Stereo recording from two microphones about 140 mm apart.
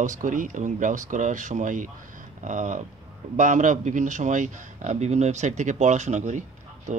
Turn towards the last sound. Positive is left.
turn(degrees=-60)  # may be behind; listen again after turning